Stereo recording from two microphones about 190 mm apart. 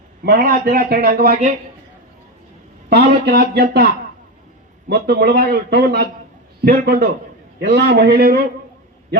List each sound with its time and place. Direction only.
0.3 s a man's voice: 50° right (ahead or behind)
2.9 s speech: 60° right (ahead or behind)
4.9 s a man's voice: 55° right (ahead or behind)